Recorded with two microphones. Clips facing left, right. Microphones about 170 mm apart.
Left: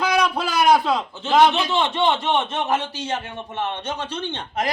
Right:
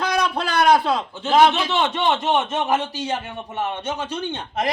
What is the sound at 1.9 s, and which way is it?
A man's voice, 5° right (ahead or behind).